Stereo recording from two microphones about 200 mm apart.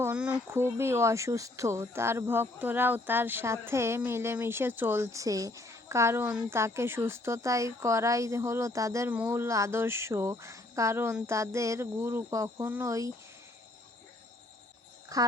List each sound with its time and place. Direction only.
0.0 s speech: 10° right (ahead or behind)
15.1 s a child's voice: 15° right (ahead or behind)